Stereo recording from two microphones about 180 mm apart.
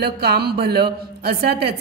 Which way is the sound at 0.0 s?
60° right (ahead or behind).